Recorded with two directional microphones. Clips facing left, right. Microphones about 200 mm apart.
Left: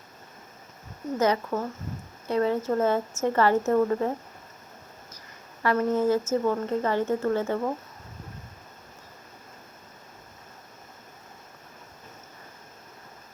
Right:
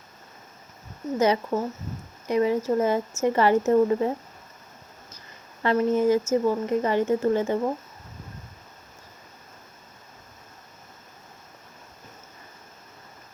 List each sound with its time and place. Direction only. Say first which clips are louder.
1.2 s speech: right 2 dB; 20° right (ahead or behind)
5.6 s a woman's voice: right 2 dB; 20° right (ahead or behind)